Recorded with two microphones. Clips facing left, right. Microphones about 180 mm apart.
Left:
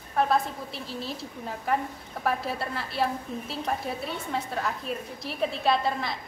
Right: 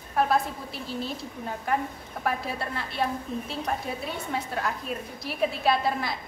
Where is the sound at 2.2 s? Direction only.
Centre (ahead or behind).